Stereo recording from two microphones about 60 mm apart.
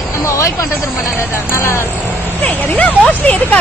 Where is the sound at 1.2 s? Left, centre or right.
Left.